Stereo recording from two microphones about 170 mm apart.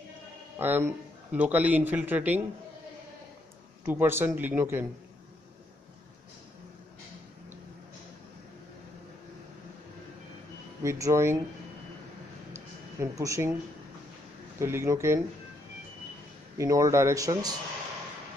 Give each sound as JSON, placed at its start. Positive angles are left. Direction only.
{"t": 0.6, "sound": "a man's voice", "side_deg": -10}
{"t": 3.8, "sound": "a man's voice", "side_deg": -15}
{"t": 10.8, "sound": "a man's voice", "side_deg": -20}
{"t": 12.5, "sound": "a sound", "side_deg": -15}
{"t": 14.6, "sound": "a man's voice", "side_deg": -15}
{"t": 16.5, "sound": "speech", "side_deg": -20}